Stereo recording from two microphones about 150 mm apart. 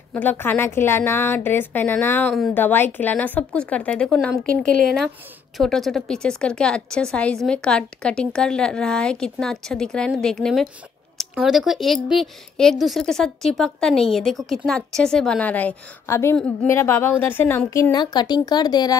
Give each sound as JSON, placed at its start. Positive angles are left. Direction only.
{"t": 0.1, "sound": "a woman's voice", "side_deg": 10}